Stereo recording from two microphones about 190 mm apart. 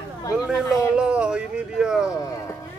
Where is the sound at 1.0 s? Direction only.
5° right (ahead or behind).